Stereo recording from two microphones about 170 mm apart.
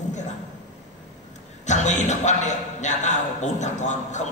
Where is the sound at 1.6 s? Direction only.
45° left (ahead or behind).